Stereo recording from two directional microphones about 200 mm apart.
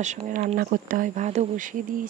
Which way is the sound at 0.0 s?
35° right (ahead or behind).